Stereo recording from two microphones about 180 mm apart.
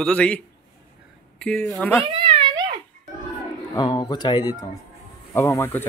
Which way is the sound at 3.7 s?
20° left (ahead or behind).